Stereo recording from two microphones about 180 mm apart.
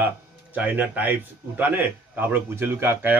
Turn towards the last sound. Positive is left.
turn(degrees=-10)  # may be behind; listen again after turning